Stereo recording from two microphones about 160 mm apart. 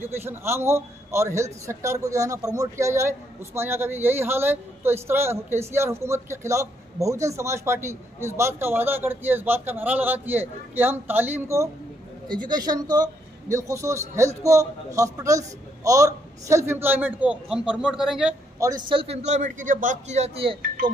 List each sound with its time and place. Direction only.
0.0 s a man's voice: 15° right (ahead or behind)
18.6 s a man's voice: 25° right (ahead or behind); by 20.5 s 40° right (ahead or behind)